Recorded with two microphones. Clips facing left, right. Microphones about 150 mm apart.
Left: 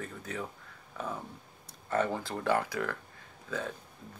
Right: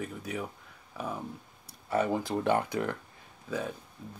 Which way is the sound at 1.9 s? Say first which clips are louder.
Right 3 dB; 15° right (ahead or behind).